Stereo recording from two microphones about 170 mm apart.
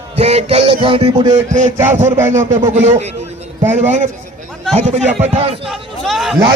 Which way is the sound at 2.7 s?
45° right (ahead or behind).